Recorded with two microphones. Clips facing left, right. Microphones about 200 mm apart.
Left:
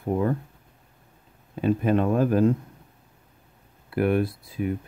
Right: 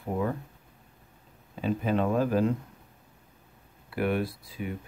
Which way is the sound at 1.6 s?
55° left (ahead or behind).